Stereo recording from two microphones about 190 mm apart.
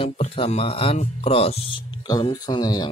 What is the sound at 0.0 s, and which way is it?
Speech, 30° left (ahead or behind).